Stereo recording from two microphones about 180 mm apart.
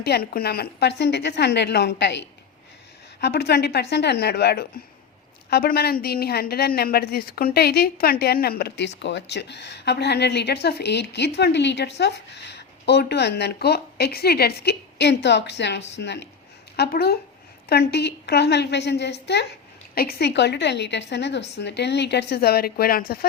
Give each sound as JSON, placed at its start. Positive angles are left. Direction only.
{"t": 0.0, "sound": "a woman's voice", "side_deg": 60}
{"t": 20.0, "sound": "speech", "side_deg": 60}